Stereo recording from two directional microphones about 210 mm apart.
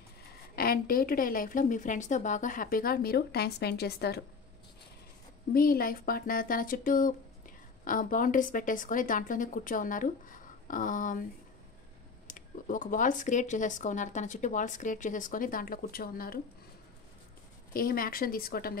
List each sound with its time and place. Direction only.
0.6 s a woman's voice: 45° left (ahead or behind)
5.5 s speech: 45° left (ahead or behind)
12.3 s speech: 40° left (ahead or behind)
17.7 s a woman's voice: 45° left (ahead or behind)